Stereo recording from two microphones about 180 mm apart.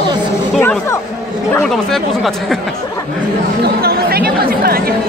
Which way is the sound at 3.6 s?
60° right (ahead or behind).